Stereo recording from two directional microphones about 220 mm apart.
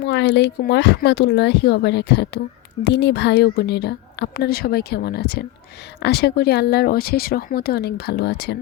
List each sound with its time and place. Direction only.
0.0 s a woman's voice: 50° left (ahead or behind)